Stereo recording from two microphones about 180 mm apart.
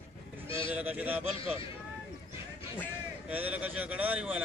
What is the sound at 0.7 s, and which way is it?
Speech, 10° right (ahead or behind).